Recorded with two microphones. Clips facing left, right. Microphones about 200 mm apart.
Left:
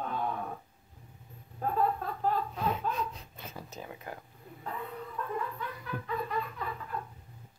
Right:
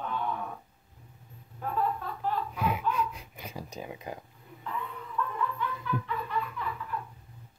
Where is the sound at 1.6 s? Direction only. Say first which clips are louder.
Left 1 dB; 35° left (ahead or behind).